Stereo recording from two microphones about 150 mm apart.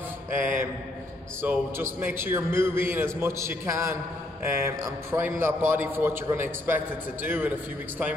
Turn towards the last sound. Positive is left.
turn(degrees=-10)  # may be behind; listen again after turning